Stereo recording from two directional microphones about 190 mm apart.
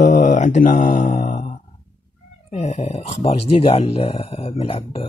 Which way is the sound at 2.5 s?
30° left (ahead or behind).